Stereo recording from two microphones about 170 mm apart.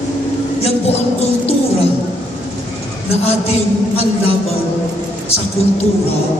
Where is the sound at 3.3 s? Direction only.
35° left (ahead or behind).